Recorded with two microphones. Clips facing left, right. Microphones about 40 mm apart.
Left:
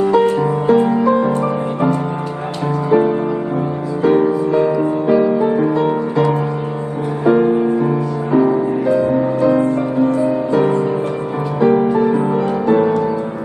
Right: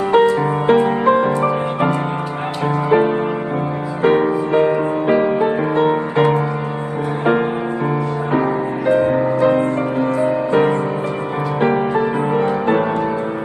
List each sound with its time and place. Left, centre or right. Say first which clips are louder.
0.0 s music: even; right